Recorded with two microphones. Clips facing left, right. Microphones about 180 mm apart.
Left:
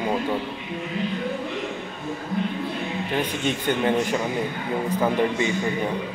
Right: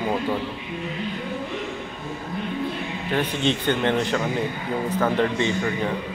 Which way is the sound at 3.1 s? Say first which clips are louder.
Right 3 dB; 10° left (ahead or behind).